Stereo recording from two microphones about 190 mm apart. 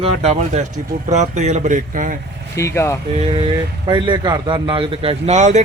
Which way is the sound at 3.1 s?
30° right (ahead or behind).